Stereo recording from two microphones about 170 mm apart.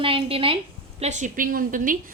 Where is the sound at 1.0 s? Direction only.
45° right (ahead or behind).